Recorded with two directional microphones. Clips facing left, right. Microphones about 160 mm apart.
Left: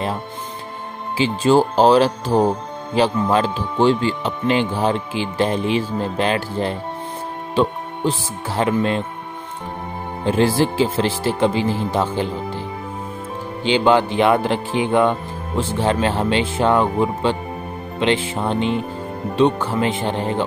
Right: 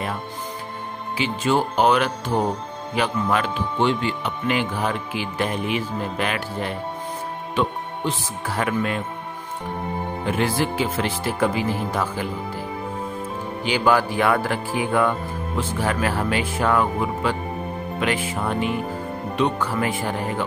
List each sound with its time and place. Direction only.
1.1 s speech: 30° left (ahead or behind)
10.2 s speech: 30° left (ahead or behind)
13.7 s speech: 25° left (ahead or behind)